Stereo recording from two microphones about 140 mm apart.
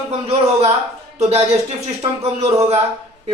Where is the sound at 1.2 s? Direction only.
50° right (ahead or behind).